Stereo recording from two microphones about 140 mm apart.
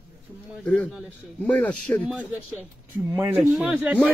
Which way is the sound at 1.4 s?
10° left (ahead or behind).